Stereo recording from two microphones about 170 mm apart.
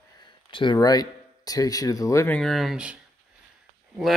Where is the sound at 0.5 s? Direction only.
30° left (ahead or behind); by 3.0 s 5° right (ahead or behind).